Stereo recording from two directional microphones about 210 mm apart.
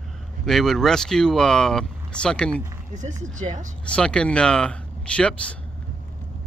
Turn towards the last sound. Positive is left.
turn(degrees=5)  # may be behind; listen again after turning